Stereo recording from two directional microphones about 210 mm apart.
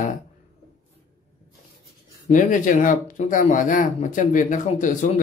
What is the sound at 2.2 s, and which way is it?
Speech, 40° left (ahead or behind).